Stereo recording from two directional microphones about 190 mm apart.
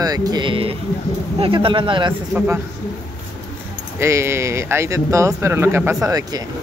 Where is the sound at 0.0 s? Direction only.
20° right (ahead or behind).